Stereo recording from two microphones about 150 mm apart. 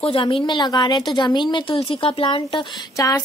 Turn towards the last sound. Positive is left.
turn(degrees=20)  # may be behind; listen again after turning